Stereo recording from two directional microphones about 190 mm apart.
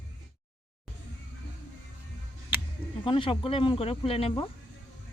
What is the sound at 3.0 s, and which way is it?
Speech, 25° left (ahead or behind).